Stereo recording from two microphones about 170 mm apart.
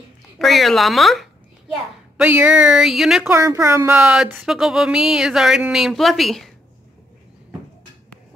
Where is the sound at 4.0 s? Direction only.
5° right (ahead or behind).